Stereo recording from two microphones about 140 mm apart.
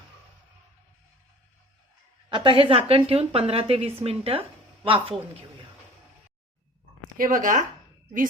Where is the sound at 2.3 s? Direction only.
35° right (ahead or behind).